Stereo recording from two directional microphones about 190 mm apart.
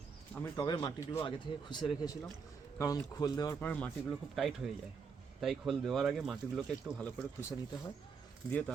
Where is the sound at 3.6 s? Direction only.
5° left (ahead or behind).